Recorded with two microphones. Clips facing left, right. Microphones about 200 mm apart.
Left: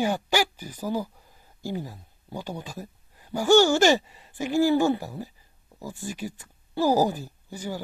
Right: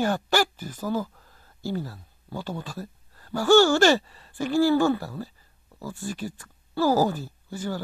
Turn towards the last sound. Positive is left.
turn(degrees=15)  # may be behind; listen again after turning